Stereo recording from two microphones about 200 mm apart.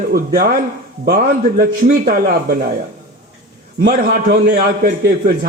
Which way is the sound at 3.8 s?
45° right (ahead or behind).